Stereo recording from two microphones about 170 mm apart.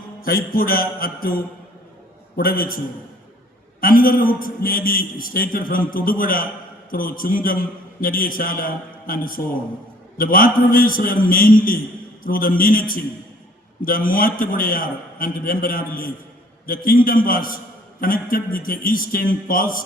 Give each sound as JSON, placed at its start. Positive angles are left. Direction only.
{"t": 0.2, "sound": "a man's voice", "side_deg": 60}